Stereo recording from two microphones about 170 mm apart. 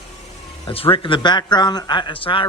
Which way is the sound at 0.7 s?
35° left (ahead or behind).